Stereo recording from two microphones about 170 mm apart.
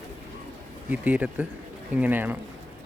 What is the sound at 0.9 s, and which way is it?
Speech, 10° right (ahead or behind).